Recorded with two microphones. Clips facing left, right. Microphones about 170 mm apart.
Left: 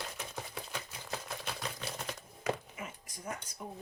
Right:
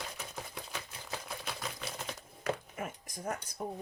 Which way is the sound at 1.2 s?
Centre (ahead or behind).